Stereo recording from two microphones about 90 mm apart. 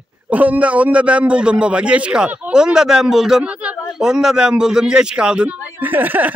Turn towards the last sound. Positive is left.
turn(degrees=-20)  # may be behind; listen again after turning